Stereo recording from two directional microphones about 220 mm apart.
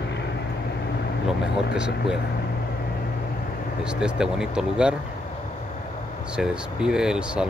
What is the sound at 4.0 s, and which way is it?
Speech, 5° right (ahead or behind).